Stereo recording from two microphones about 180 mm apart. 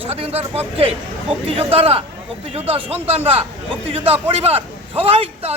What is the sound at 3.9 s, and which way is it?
Speech, 30° right (ahead or behind).